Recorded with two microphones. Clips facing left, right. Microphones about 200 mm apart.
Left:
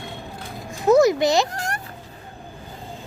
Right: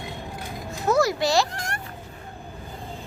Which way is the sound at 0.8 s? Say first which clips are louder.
Left 6 dB; 20° left (ahead or behind).